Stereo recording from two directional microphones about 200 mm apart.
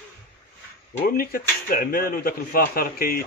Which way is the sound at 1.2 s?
45° left (ahead or behind).